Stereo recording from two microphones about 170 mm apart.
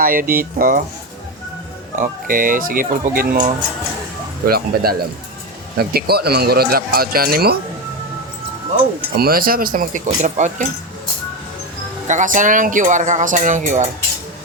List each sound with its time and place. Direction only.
0.0 s speech: 55° right (ahead or behind)
2.0 s speech: 55° right (ahead or behind)
4.4 s speech: 65° right (ahead or behind)
9.0 s speech: 65° right (ahead or behind); by 10.7 s 45° right (ahead or behind)
12.0 s speech: 50° right (ahead or behind)